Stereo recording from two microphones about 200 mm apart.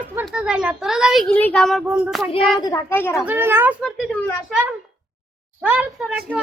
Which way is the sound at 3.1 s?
10° right (ahead or behind).